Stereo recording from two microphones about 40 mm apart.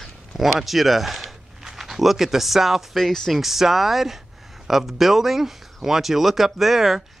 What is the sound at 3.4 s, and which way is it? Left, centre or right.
Speech, centre.